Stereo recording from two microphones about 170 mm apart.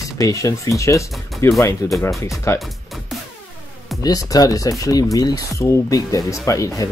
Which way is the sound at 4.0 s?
20° left (ahead or behind).